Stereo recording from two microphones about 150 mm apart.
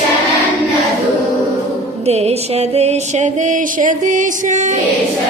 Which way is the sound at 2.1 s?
45° right (ahead or behind).